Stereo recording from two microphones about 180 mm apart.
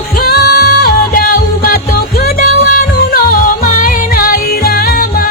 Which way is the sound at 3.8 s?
50° left (ahead or behind).